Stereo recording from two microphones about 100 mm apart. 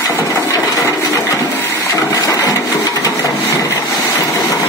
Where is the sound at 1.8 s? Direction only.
30° left (ahead or behind).